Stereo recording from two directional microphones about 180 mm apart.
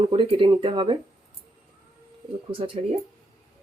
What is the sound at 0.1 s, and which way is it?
Speech, 30° right (ahead or behind).